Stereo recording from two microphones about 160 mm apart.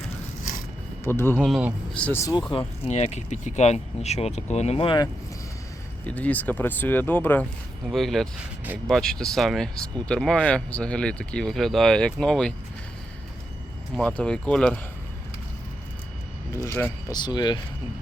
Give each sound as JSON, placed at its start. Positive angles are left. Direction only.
{"t": 1.0, "sound": "speech", "side_deg": 15}
{"t": 1.5, "sound": "speech", "side_deg": 0}
{"t": 2.5, "sound": "speech", "side_deg": 40}
{"t": 6.1, "sound": "speech", "side_deg": 10}
{"t": 7.9, "sound": "speech", "side_deg": 0}
{"t": 13.9, "sound": "speech", "side_deg": 5}
{"t": 16.5, "sound": "speech", "side_deg": 20}
{"t": 17.1, "sound": "speech", "side_deg": 25}